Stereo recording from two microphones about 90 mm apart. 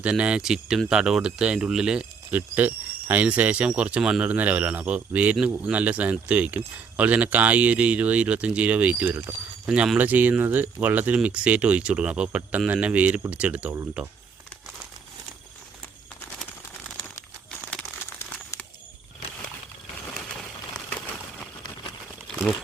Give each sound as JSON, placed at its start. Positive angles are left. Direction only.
{"t": 0.0, "sound": "speech", "side_deg": -15}
{"t": 2.3, "sound": "speech", "side_deg": -20}
{"t": 9.6, "sound": "speech", "side_deg": -10}
{"t": 10.0, "sound": "speech", "side_deg": -20}
{"t": 20.2, "sound": "a sound", "side_deg": 10}